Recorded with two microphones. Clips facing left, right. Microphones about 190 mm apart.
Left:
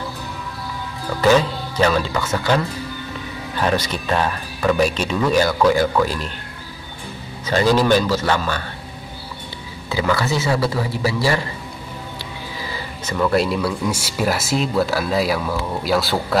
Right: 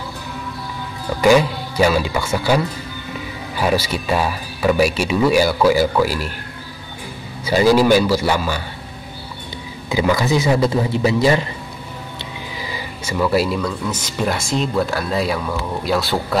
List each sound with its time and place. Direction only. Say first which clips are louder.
1.2 s speech: right 2 dB; 10° right (ahead or behind)
7.4 s speech: right 3 dB; 10° right (ahead or behind)
9.8 s a man's voice: right 3 dB; 15° right (ahead or behind)
13.0 s speech: right 1 dB; 5° right (ahead or behind)
13.6 s speech: left 1 dB; 10° left (ahead or behind)